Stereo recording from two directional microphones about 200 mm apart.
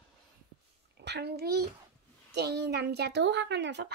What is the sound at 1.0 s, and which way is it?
A child's voice, 55° right (ahead or behind).